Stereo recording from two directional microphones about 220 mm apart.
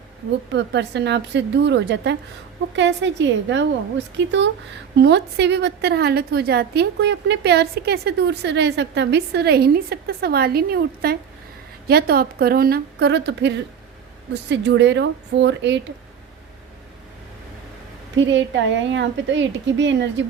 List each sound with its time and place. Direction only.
0.5 s a woman's voice: 50° right (ahead or behind)
14.5 s a woman's voice: 50° right (ahead or behind)
18.3 s a woman's voice: 55° right (ahead or behind)